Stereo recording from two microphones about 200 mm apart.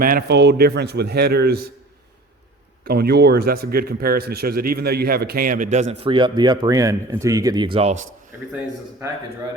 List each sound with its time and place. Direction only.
0.0 s speech: 50° right (ahead or behind)
2.8 s speech: 50° right (ahead or behind); by 7.9 s 25° right (ahead or behind)